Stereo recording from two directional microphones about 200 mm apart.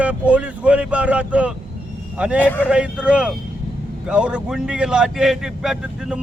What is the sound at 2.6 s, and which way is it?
Speech, 5° right (ahead or behind).